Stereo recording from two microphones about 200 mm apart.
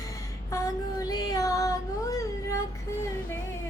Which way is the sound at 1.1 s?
20° left (ahead or behind).